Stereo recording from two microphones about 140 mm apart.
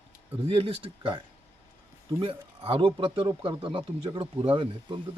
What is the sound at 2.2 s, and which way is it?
Speech, 40° right (ahead or behind).